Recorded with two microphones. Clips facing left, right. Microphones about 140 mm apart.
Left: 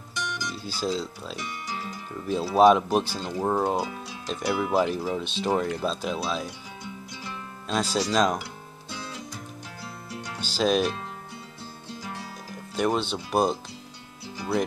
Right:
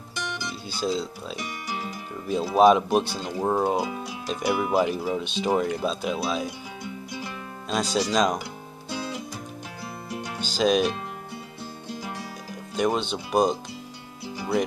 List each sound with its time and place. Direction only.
0.7 s speech: centre (ahead or behind)
1.4 s music: 15° right (ahead or behind)
2.5 s speech: 5° right (ahead or behind)
7.6 s speech: centre (ahead or behind)
8.9 s music: 10° right (ahead or behind)
10.4 s speech: centre (ahead or behind)
12.7 s speech: centre (ahead or behind)
14.2 s music: 15° right (ahead or behind)